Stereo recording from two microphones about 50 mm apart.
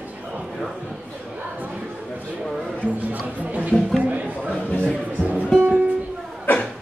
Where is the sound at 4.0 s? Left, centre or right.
Right.